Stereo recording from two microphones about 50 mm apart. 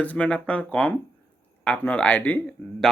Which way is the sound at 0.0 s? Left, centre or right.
Left.